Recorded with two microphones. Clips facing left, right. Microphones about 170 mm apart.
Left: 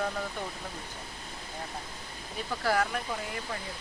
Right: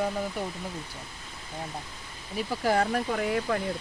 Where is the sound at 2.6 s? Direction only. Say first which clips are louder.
Right 3 dB; 15° right (ahead or behind).